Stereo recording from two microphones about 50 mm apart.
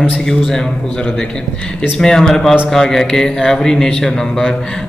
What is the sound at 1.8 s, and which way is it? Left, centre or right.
Mantra, centre.